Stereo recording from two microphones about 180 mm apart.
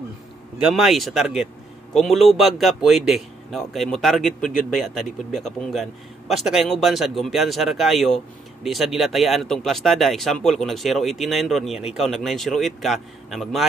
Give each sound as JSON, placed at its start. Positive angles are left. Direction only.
{"t": 0.6, "sound": "a man's voice", "side_deg": -5}